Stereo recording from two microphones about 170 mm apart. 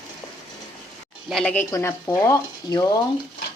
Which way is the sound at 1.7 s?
15° left (ahead or behind).